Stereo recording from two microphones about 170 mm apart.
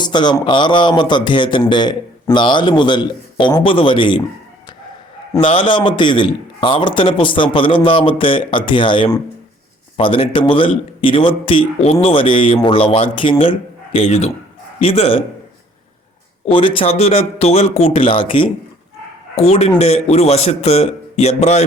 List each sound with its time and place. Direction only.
0.0 s a man's voice: 25° left (ahead or behind)
5.4 s a man's voice: 30° left (ahead or behind)
16.5 s a man's voice: 30° left (ahead or behind)